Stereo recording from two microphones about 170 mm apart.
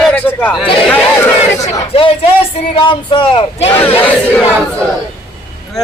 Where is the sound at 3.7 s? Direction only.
15° left (ahead or behind).